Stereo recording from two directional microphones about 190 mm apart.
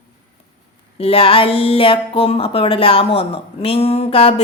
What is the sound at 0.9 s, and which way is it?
Speech, 30° left (ahead or behind).